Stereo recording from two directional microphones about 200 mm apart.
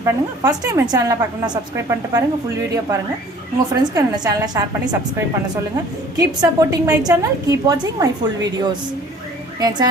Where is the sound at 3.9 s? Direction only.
15° right (ahead or behind).